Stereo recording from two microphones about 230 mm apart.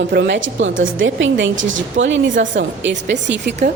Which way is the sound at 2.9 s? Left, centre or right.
Right.